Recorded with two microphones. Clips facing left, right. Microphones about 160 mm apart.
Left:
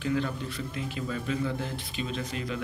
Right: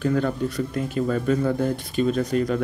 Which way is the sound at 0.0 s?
45° right (ahead or behind).